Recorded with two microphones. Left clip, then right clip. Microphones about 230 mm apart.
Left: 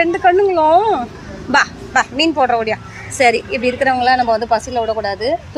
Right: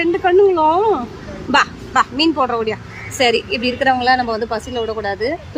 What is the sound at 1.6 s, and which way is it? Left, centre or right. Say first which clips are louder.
Speech: even; right.